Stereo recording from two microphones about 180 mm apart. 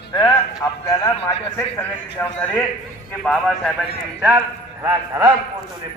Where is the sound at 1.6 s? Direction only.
10° left (ahead or behind).